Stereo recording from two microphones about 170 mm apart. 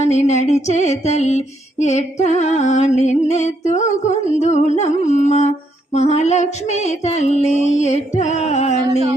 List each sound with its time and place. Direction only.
0.1 s female singing: 40° left (ahead or behind)